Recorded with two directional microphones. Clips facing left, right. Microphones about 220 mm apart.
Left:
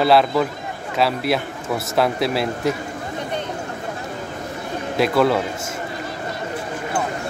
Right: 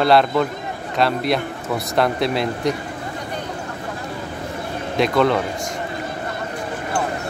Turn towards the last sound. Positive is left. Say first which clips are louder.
# even
turn(degrees=5)  # may be behind; listen again after turning